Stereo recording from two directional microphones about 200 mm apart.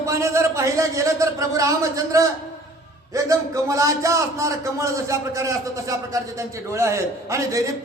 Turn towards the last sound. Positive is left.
turn(degrees=-15)  # may be behind; listen again after turning